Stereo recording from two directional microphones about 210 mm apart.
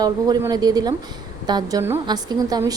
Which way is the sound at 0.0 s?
20° right (ahead or behind).